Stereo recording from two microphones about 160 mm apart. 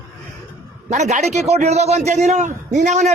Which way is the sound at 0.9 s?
45° right (ahead or behind).